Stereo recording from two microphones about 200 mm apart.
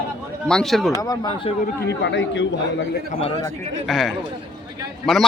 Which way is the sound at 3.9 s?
Centre (ahead or behind).